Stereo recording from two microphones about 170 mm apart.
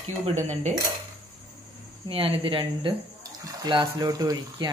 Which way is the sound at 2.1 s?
35° right (ahead or behind).